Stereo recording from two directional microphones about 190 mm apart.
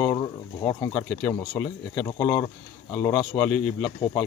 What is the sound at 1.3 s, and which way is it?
Speech, 15° left (ahead or behind).